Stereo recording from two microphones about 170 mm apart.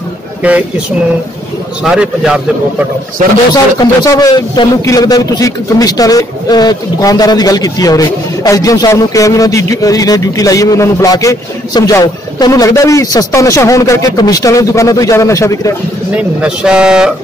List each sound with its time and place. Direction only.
0.4 s speech: 10° right (ahead or behind)
1.8 s speech: 5° right (ahead or behind)
4.0 s a man's voice: 20° left (ahead or behind)
16.1 s speech: 5° right (ahead or behind)